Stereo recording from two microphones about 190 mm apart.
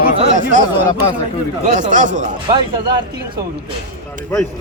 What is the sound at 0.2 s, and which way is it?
Chatter, 40° right (ahead or behind).